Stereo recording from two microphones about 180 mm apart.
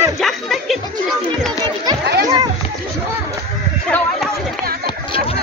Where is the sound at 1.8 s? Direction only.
20° right (ahead or behind).